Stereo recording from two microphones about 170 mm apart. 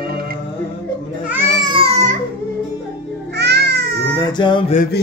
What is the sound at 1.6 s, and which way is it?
Baby cry, 30° right (ahead or behind).